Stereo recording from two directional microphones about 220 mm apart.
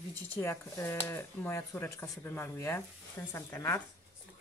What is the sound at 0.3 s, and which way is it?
Speech, 10° left (ahead or behind).